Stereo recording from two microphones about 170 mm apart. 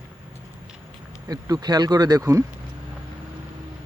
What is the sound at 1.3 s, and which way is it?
Speech, 20° right (ahead or behind).